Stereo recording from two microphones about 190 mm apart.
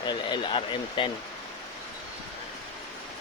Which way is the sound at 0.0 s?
25° left (ahead or behind).